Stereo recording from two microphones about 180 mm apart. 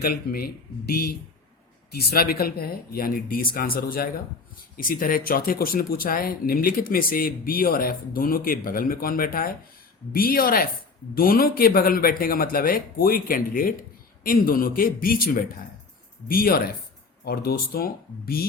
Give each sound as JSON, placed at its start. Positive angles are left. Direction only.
{"t": 0.0, "sound": "speech", "side_deg": 55}
{"t": 1.9, "sound": "speech", "side_deg": 60}